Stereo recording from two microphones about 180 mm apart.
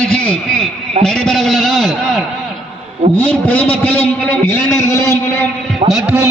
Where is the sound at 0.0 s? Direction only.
5° left (ahead or behind).